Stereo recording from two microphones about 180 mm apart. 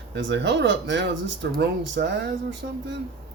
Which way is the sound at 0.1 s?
85° right.